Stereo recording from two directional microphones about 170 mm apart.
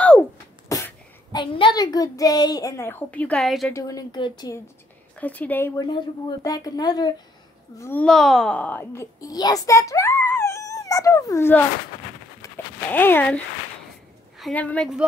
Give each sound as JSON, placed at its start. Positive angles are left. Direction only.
{"t": 0.7, "sound": "speech", "side_deg": 20}
{"t": 3.7, "sound": "speech", "side_deg": 20}
{"t": 5.1, "sound": "speech", "side_deg": 10}
{"t": 5.8, "sound": "speech", "side_deg": 25}
{"t": 7.8, "sound": "a child's voice", "side_deg": 10}
{"t": 12.9, "sound": "a child's voice", "side_deg": 10}
{"t": 14.4, "sound": "a child's voice", "side_deg": 10}